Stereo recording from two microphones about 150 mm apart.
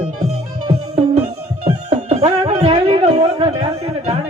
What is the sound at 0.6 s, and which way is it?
Music, 40° right (ahead or behind).